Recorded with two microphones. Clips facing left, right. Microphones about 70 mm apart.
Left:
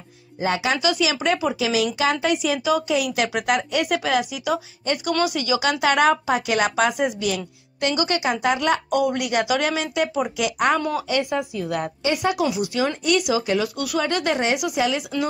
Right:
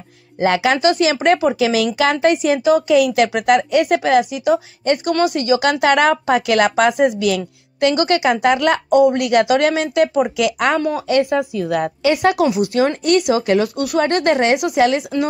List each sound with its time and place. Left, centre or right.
0.4 s a woman's voice: right
7.2 s a woman's voice: right
8.0 s a woman's voice: right
8.9 s a woman's voice: right
9.2 s a woman's voice: right